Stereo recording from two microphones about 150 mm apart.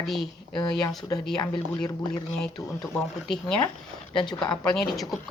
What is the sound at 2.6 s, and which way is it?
A woman's voice, centre (ahead or behind).